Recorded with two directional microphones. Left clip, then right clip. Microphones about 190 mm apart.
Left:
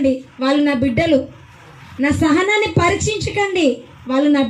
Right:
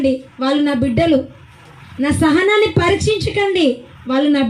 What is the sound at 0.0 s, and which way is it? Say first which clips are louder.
A woman's voice: even; 45° right (ahead or behind).